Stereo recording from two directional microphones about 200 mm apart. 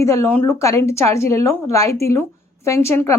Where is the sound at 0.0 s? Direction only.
15° left (ahead or behind).